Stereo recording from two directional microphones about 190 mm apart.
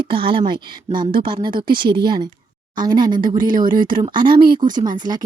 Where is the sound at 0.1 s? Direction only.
30° right (ahead or behind).